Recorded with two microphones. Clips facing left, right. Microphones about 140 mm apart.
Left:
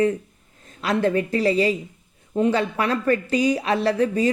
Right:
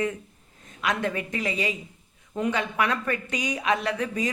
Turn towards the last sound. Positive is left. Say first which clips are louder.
# left 8 dB
turn(degrees=35)  # may be behind; listen again after turning